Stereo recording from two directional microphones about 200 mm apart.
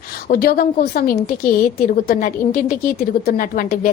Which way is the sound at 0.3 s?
45° left (ahead or behind).